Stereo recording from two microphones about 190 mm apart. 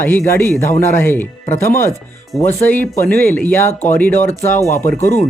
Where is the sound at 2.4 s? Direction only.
10° left (ahead or behind).